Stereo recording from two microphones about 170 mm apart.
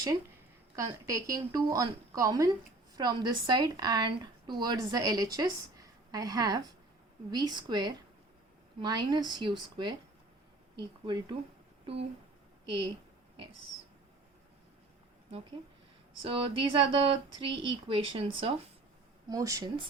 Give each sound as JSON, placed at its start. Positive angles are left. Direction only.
{"t": 0.8, "sound": "a woman's voice", "side_deg": -20}
{"t": 12.6, "sound": "a woman's voice", "side_deg": -30}
{"t": 16.2, "sound": "speech", "side_deg": -30}
{"t": 19.3, "sound": "a woman's voice", "side_deg": -20}